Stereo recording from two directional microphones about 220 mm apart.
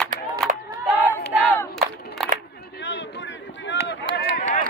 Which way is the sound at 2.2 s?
Centre (ahead or behind).